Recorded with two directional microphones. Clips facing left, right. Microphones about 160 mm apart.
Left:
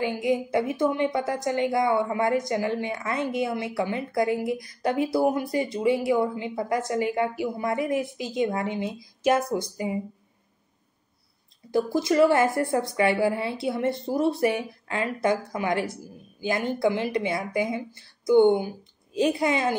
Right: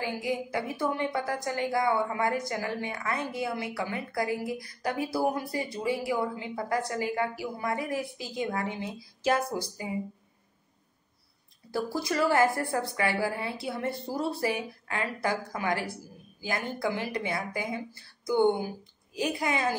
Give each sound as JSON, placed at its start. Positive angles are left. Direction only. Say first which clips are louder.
{"t": 0.0, "sound": "a woman's voice", "louder": "left 6 dB", "side_deg": 20}
{"t": 11.7, "sound": "a woman's voice", "louder": "left 7 dB", "side_deg": 20}